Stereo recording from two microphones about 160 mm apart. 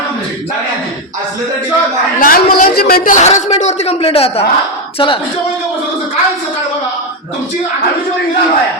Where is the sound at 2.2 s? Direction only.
60° left (ahead or behind); by 5.2 s 35° left (ahead or behind).